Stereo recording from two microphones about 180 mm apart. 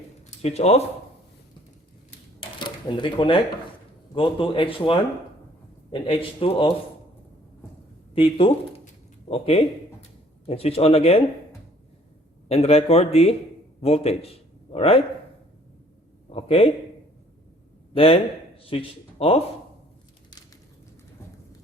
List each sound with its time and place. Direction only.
0.3 s speech: 35° left (ahead or behind)
2.6 s speech: 25° left (ahead or behind)
8.1 s a man's voice: 30° left (ahead or behind)
12.5 s a man's voice: 35° left (ahead or behind)
16.3 s speech: 35° left (ahead or behind)
17.9 s speech: 30° left (ahead or behind)